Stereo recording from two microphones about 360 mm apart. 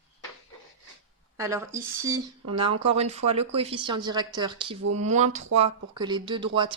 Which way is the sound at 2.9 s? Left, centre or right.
Centre.